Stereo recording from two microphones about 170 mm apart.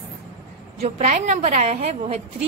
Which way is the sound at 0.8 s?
40° right (ahead or behind).